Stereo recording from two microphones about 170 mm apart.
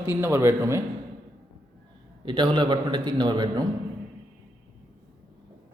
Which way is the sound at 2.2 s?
30° right (ahead or behind).